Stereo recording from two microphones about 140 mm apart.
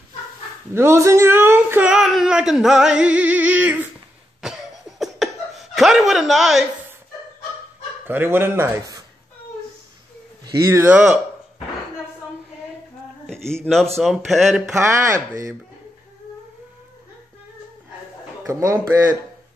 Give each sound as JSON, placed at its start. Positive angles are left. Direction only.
{"t": 0.7, "sound": "speech", "side_deg": -20}
{"t": 4.4, "sound": "cough", "side_deg": -5}
{"t": 8.1, "sound": "speech", "side_deg": -15}
{"t": 10.4, "sound": "a man's voice", "side_deg": -20}
{"t": 13.3, "sound": "a sound", "side_deg": 5}
{"t": 13.9, "sound": "speech", "side_deg": 0}
{"t": 14.8, "sound": "a man's voice", "side_deg": -20}
{"t": 18.5, "sound": "a man's voice", "side_deg": -25}